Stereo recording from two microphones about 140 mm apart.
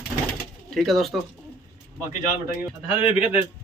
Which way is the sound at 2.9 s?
40° left (ahead or behind).